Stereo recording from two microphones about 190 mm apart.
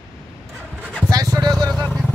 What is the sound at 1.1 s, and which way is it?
Vehicle, 20° right (ahead or behind).